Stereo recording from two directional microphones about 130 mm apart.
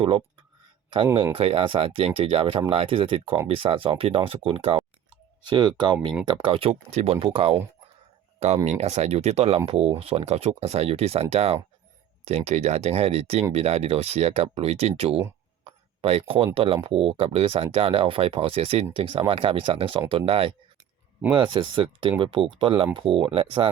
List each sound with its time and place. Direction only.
1.1 s speech: 45° right (ahead or behind)
8.6 s speech: 55° right (ahead or behind)